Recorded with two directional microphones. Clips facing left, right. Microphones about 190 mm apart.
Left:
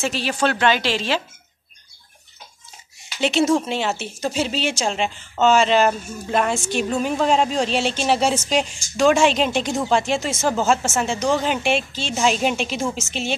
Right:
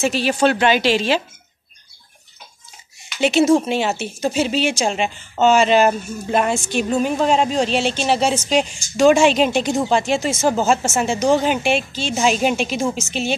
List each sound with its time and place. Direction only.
0.0 s speech: 10° right (ahead or behind)
3.2 s a woman's voice: 10° right (ahead or behind)
10.4 s speech: 20° right (ahead or behind)
11.4 s a woman's voice: 5° right (ahead or behind)